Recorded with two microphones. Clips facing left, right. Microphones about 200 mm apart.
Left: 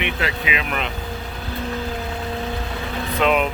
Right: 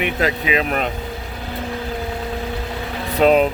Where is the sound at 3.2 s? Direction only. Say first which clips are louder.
Right 6 dB; 35° right (ahead or behind).